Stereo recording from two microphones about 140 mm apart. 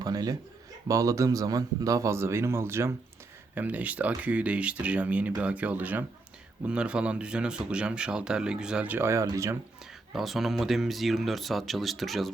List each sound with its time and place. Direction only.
0.0 s a sound: 25° right (ahead or behind)
0.9 s speech: 25° right (ahead or behind)
10.1 s speech: centre (ahead or behind)